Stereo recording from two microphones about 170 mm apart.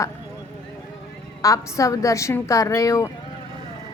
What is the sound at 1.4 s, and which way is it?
A woman's voice, 20° left (ahead or behind).